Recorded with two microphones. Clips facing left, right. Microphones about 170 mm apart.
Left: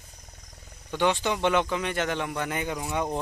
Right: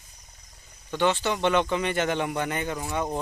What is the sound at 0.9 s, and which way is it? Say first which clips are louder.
Speech: right 1 dB; 10° left (ahead or behind).